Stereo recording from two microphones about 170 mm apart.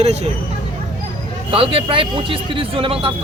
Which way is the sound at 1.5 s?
35° right (ahead or behind).